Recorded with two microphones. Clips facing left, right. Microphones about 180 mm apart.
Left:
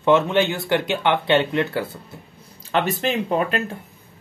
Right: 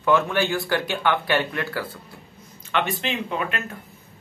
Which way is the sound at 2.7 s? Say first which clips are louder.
Left 4 dB; 40° left (ahead or behind).